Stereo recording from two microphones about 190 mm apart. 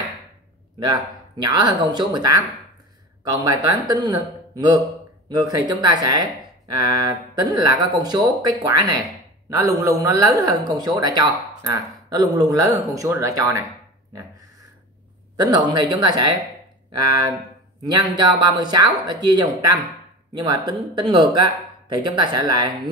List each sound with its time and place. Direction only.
0.7 s speech: 25° right (ahead or behind)
3.4 s speech: 20° right (ahead or behind)
15.3 s speech: 20° right (ahead or behind)